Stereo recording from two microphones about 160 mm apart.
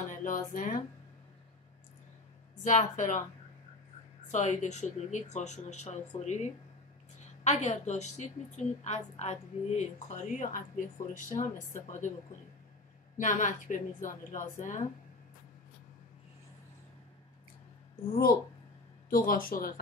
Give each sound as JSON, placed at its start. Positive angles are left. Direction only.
{"t": 0.1, "sound": "speech", "side_deg": 55}
{"t": 2.6, "sound": "speech", "side_deg": 50}
{"t": 4.3, "sound": "speech", "side_deg": 50}
{"t": 7.4, "sound": "speech", "side_deg": 45}
{"t": 13.2, "sound": "speech", "side_deg": 50}
{"t": 19.0, "sound": "a woman's voice", "side_deg": 60}